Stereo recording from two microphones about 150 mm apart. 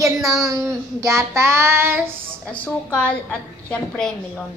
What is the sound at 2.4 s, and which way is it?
A woman's voice, 5° left (ahead or behind).